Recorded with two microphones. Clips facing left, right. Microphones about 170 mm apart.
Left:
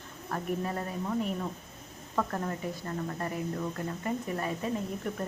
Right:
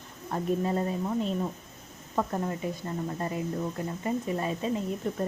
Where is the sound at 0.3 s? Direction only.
25° right (ahead or behind).